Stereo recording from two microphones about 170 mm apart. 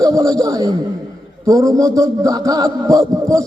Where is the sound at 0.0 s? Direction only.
20° right (ahead or behind).